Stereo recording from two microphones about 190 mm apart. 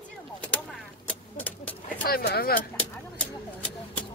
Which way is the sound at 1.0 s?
10° left (ahead or behind).